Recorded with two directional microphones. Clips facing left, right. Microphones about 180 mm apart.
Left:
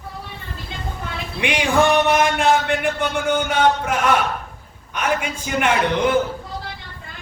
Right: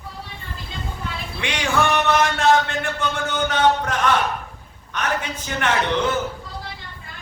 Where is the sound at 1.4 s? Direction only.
15° left (ahead or behind).